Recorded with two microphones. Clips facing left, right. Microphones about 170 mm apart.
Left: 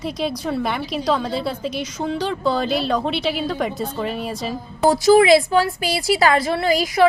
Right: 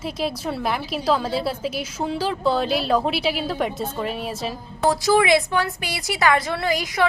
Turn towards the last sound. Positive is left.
turn(degrees=30)  # may be behind; listen again after turning